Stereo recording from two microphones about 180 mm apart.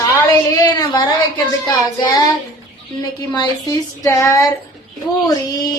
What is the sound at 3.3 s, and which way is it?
Speech, 20° left (ahead or behind).